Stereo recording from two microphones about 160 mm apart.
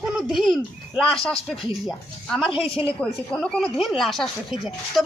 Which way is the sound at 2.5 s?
35° left (ahead or behind).